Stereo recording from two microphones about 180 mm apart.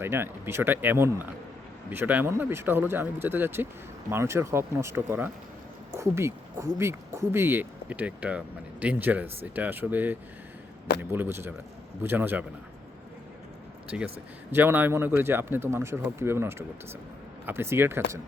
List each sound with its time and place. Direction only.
0.0 s speech: 15° right (ahead or behind)
13.9 s speech: 5° right (ahead or behind)